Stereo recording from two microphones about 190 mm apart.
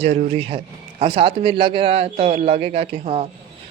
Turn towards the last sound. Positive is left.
turn(degrees=-35)  # may be behind; listen again after turning